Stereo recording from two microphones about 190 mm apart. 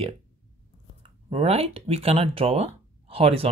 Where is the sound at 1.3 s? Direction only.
30° right (ahead or behind).